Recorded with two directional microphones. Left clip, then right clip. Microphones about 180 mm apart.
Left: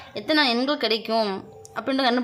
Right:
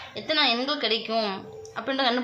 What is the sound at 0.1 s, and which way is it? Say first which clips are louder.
A woman's voice: left 2 dB; 45° left (ahead or behind).